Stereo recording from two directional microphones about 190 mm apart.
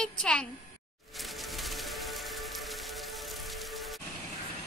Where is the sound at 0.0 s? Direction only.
5° left (ahead or behind).